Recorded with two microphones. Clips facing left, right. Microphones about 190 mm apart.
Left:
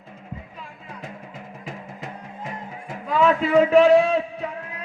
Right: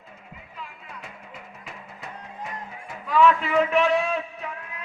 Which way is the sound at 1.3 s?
90° left.